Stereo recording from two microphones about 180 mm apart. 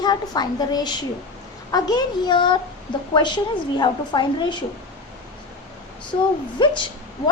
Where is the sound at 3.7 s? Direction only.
25° left (ahead or behind).